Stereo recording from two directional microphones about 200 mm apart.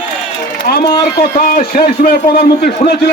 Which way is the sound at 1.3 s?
45° left (ahead or behind).